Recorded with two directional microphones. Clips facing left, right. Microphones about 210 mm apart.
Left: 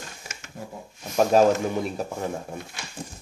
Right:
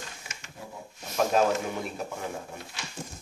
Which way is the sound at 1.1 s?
40° left (ahead or behind).